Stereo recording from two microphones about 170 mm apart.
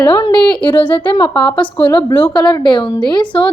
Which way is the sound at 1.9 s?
25° left (ahead or behind).